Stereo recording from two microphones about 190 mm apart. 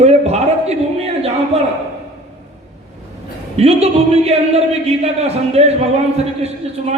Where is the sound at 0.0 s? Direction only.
35° right (ahead or behind).